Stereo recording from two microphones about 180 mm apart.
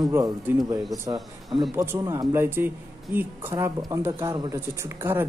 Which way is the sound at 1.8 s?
15° right (ahead or behind).